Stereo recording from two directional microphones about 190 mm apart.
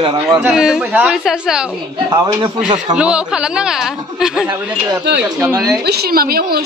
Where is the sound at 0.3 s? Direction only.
Centre (ahead or behind).